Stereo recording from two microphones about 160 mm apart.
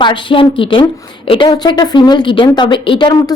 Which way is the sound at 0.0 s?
30° left (ahead or behind).